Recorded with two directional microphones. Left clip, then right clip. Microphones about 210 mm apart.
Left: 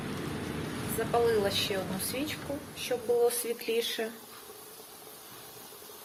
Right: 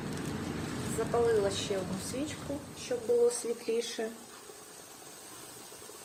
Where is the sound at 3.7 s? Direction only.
10° right (ahead or behind).